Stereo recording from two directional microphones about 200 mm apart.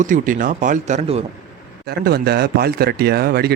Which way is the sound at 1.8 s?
50° right (ahead or behind).